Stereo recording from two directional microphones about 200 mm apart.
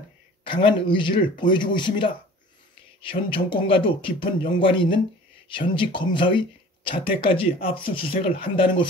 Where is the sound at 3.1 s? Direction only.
25° left (ahead or behind).